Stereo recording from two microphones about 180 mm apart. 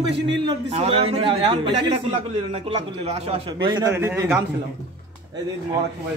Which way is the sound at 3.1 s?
35° right (ahead or behind).